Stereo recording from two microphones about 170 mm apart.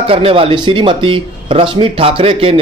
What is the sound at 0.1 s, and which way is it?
Speech, 35° right (ahead or behind).